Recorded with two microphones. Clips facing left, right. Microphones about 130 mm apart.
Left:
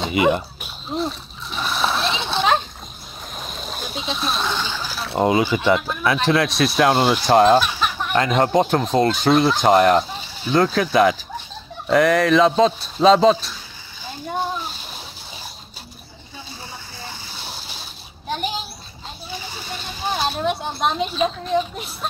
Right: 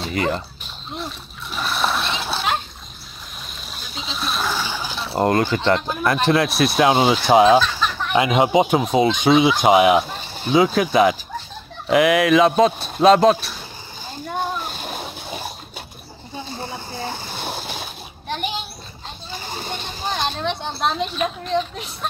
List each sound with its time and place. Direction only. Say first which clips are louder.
0.1 s speech: left 5 dB; 10° left (ahead or behind)
1.5 s splash: even; centre (ahead or behind)
3.3 s a sound: left 7 dB; 45° left (ahead or behind)
3.9 s speech: left 1 dB; centre (ahead or behind)
4.9 s speech: even; centre (ahead or behind)
7.6 s chicken: even; 15° left (ahead or behind)
8.1 s speech: right 1 dB; 10° right (ahead or behind)
14.0 s splash: left 1 dB; 50° right (ahead or behind)
16.4 s a sound: right 7 dB; 50° right (ahead or behind)
18.3 s a sound: left 1 dB; centre (ahead or behind)
19.3 s a sound: right 3 dB; 50° right (ahead or behind)
20.1 s speech: left 2 dB; 10° left (ahead or behind)